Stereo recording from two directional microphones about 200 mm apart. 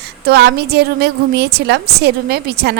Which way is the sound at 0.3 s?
55° right (ahead or behind).